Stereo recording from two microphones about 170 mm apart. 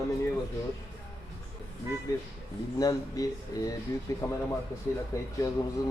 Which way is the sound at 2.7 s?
20° left (ahead or behind).